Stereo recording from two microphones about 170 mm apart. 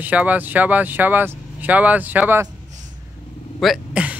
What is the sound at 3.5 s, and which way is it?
Vehicle, centre (ahead or behind).